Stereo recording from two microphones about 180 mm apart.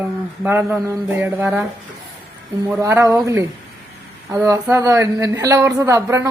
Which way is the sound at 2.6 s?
10° right (ahead or behind).